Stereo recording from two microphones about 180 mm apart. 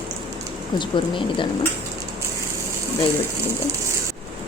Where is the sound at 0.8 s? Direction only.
25° left (ahead or behind).